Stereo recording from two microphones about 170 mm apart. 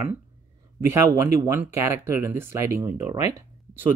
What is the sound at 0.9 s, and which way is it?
Speech, 15° right (ahead or behind).